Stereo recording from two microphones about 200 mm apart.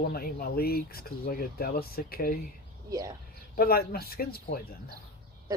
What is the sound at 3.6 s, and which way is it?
Speech, 50° left (ahead or behind).